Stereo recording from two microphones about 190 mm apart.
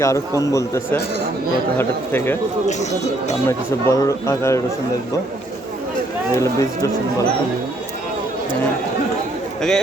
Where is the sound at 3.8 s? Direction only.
15° left (ahead or behind).